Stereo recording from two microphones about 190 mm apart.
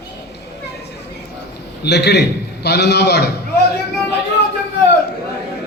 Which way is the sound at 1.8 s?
60° left (ahead or behind).